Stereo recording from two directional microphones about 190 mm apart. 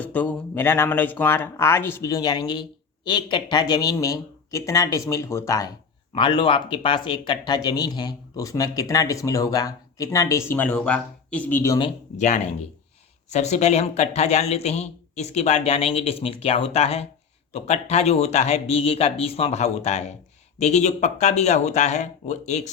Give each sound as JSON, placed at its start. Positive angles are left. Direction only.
{"t": 0.0, "sound": "speech", "side_deg": 10}
{"t": 12.1, "sound": "speech", "side_deg": 40}